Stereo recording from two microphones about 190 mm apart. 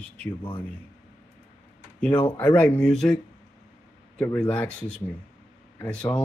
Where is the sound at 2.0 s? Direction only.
5° left (ahead or behind).